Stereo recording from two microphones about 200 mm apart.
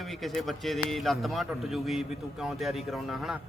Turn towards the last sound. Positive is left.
turn(degrees=0)  # may be behind; listen again after turning